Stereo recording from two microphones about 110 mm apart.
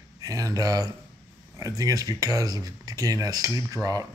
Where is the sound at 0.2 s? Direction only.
30° right (ahead or behind).